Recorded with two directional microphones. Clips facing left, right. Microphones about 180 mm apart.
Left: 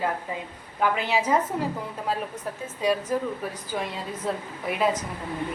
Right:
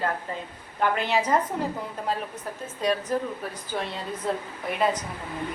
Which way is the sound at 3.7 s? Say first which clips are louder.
Right 1 dB; 5° left (ahead or behind).